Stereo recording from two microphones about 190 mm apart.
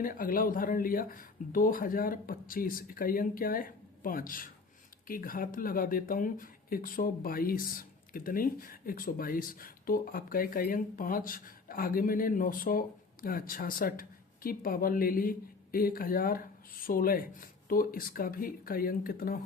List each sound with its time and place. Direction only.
0.0 s speech: 45° left (ahead or behind)